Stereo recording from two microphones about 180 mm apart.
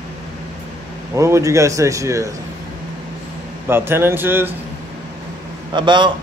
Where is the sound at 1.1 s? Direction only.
15° right (ahead or behind).